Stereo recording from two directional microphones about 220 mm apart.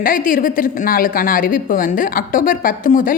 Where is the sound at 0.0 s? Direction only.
40° left (ahead or behind).